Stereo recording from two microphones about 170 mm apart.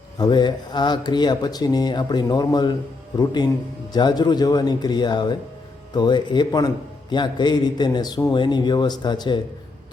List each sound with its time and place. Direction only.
0.2 s speech: 25° left (ahead or behind)
3.9 s speech: 25° left (ahead or behind)